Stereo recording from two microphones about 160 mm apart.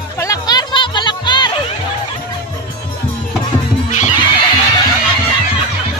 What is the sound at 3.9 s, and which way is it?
Neigh, 50° left (ahead or behind).